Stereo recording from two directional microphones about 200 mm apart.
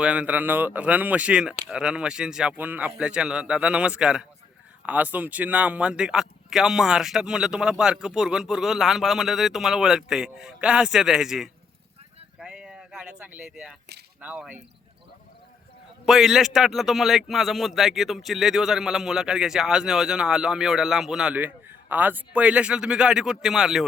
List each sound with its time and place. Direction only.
0.0 s a man's voice: 5° right (ahead or behind)
12.4 s a sound: 5° right (ahead or behind)
14.2 s speech: 5° right (ahead or behind)
16.0 s a man's voice: centre (ahead or behind)